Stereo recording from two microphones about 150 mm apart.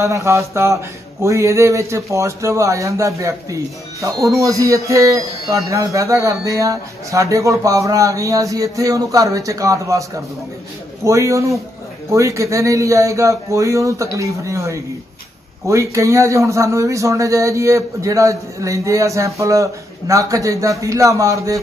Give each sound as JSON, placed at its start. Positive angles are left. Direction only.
{"t": 0.0, "sound": "speech", "side_deg": -20}